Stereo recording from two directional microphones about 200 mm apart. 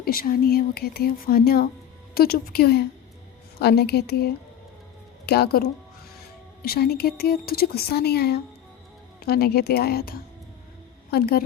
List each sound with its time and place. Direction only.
0.0 s speech: 45° left (ahead or behind)